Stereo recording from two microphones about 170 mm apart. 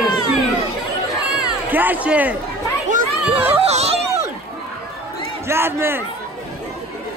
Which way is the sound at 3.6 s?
40° right (ahead or behind).